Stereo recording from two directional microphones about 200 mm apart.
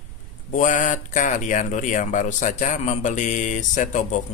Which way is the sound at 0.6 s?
40° left (ahead or behind).